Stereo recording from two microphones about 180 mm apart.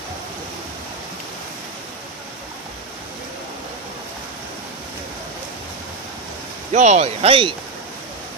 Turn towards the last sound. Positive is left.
turn(degrees=-30)  # may be behind; listen again after turning